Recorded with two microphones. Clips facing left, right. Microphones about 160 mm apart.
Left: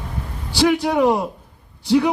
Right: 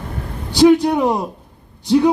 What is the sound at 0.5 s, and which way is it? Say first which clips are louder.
Speech: right 5 dB; 15° right (ahead or behind).